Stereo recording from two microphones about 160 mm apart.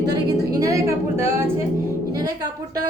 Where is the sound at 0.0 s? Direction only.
25° right (ahead or behind).